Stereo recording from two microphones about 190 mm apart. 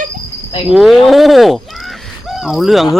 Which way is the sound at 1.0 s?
Centre (ahead or behind).